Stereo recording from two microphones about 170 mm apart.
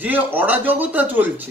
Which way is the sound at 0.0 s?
10° right (ahead or behind).